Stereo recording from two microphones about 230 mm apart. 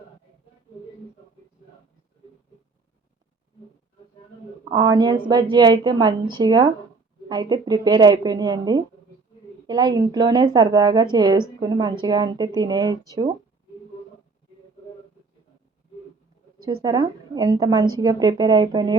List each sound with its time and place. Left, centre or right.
4.7 s a woman's voice: centre
16.8 s a woman's voice: centre